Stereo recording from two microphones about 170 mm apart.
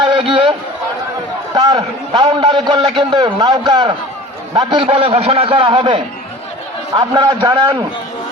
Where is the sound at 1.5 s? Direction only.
25° right (ahead or behind).